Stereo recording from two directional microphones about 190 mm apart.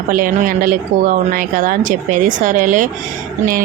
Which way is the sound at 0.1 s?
45° right (ahead or behind).